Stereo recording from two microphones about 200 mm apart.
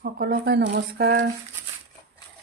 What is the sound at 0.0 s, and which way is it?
Speech, 50° right (ahead or behind).